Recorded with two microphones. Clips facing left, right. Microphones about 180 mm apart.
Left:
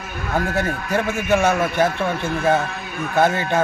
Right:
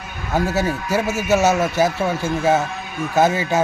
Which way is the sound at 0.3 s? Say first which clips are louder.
Right 2 dB; 10° right (ahead or behind).